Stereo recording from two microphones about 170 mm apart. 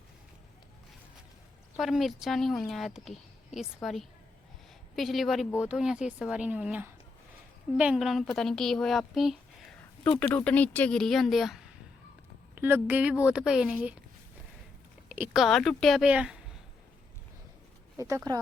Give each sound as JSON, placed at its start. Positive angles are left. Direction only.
{"t": 1.8, "sound": "a woman's voice", "side_deg": 0}
{"t": 10.0, "sound": "a woman's voice", "side_deg": 10}
{"t": 15.1, "sound": "speech", "side_deg": -5}
{"t": 18.3, "sound": "speech", "side_deg": -25}